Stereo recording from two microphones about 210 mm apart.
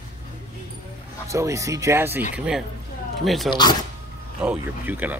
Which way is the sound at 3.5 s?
20° left (ahead or behind).